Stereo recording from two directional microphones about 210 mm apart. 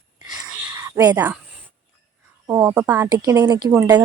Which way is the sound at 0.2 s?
15° right (ahead or behind).